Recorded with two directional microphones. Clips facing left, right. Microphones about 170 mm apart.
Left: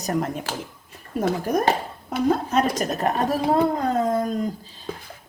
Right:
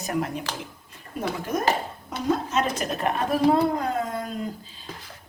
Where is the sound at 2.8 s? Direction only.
40° left (ahead or behind).